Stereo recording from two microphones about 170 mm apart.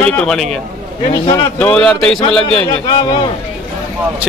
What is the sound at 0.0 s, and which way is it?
Speech, 5° left (ahead or behind).